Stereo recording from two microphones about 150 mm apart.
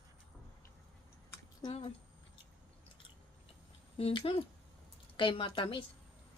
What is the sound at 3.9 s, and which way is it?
A woman's voice, 40° left (ahead or behind).